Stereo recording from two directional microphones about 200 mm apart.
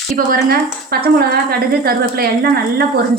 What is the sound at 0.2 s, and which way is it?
Speech, 45° right (ahead or behind).